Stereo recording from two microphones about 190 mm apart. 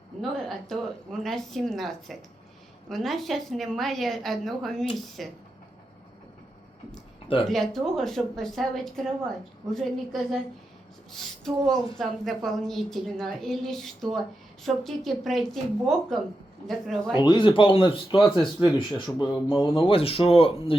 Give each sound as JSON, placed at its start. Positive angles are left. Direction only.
{"t": 0.2, "sound": "a woman's voice", "side_deg": 0}
{"t": 7.4, "sound": "a woman's voice", "side_deg": 0}
{"t": 17.2, "sound": "speech", "side_deg": 25}
{"t": 18.2, "sound": "a woman's voice", "side_deg": 0}
{"t": 18.6, "sound": "speech", "side_deg": 25}